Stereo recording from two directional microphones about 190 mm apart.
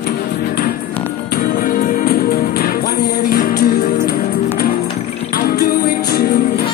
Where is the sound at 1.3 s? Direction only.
50° left (ahead or behind).